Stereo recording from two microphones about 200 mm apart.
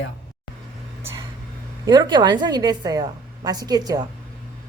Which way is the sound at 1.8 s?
20° right (ahead or behind).